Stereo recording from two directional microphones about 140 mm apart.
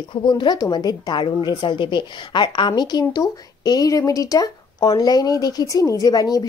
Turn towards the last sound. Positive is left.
turn(degrees=25)  # may be behind; listen again after turning